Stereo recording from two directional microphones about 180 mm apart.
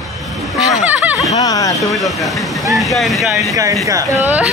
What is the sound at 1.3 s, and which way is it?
Speech, 20° left (ahead or behind).